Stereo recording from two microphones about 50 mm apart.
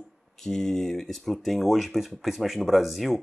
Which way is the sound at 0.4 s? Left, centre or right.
Centre.